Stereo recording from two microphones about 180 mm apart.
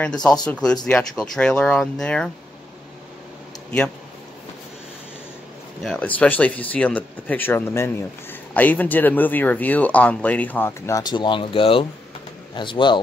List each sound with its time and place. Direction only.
0.0 s speech: 5° left (ahead or behind)
5.8 s speech: 5° left (ahead or behind); by 13.0 s 25° left (ahead or behind)